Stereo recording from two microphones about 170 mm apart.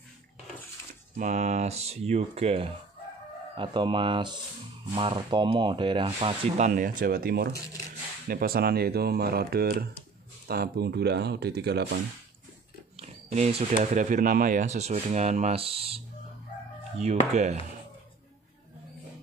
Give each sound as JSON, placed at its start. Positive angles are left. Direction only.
{"t": 1.1, "sound": "speech", "side_deg": -45}
{"t": 6.7, "sound": "speech", "side_deg": -55}
{"t": 12.9, "sound": "speech", "side_deg": -40}
{"t": 17.0, "sound": "speech", "side_deg": -40}